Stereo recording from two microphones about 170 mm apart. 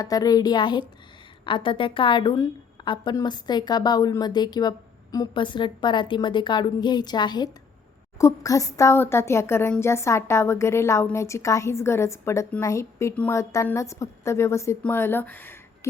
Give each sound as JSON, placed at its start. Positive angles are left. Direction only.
{"t": 0.0, "sound": "a woman's voice", "side_deg": 20}